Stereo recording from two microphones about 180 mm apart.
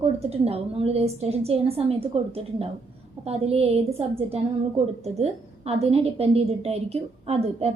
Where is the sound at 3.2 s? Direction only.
35° right (ahead or behind).